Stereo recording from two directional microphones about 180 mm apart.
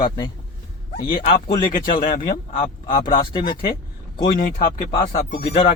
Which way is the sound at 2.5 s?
25° left (ahead or behind).